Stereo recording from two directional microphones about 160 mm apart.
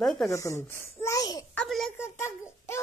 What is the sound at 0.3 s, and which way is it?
A child's voice, 20° left (ahead or behind).